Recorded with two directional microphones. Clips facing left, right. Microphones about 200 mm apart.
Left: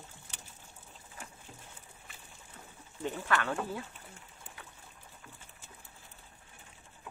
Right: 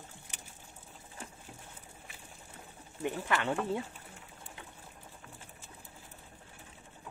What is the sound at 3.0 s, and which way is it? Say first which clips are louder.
Speech: even; 15° right (ahead or behind).